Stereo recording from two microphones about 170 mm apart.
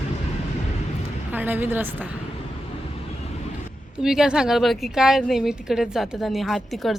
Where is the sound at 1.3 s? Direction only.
10° right (ahead or behind).